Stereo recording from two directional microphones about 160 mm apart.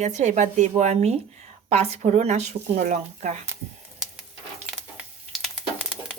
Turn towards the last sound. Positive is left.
turn(degrees=0)  # may be behind; listen again after turning